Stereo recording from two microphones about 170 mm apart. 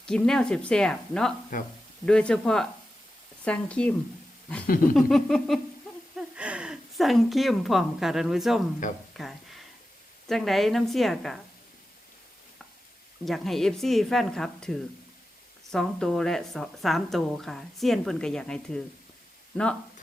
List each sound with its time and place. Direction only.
0.0 s a woman's voice: 5° left (ahead or behind)
1.5 s speech: 50° left (ahead or behind)
2.0 s a woman's voice: 5° left (ahead or behind)
4.6 s a sound: 60° left (ahead or behind)
4.9 s a woman's voice: centre (ahead or behind)
9.1 s a sound: centre (ahead or behind)
10.2 s a woman's voice: centre (ahead or behind)
13.2 s a woman's voice: centre (ahead or behind)